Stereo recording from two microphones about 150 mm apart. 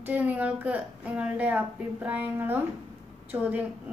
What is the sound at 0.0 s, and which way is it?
A child's voice, 10° right (ahead or behind).